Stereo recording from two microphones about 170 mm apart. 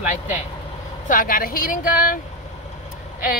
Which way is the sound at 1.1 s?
55° left (ahead or behind).